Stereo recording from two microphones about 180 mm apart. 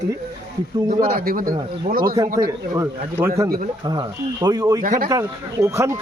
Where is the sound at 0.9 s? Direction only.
50° right (ahead or behind).